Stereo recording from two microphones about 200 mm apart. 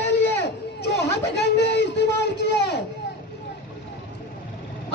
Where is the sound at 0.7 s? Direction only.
55° left (ahead or behind).